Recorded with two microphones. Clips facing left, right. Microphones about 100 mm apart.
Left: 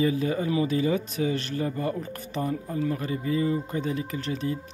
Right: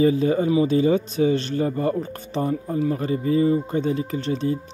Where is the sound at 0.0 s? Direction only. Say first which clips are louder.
Right 6 dB; 30° right (ahead or behind).